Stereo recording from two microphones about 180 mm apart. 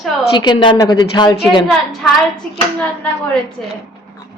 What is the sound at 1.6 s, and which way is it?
Speech, centre (ahead or behind).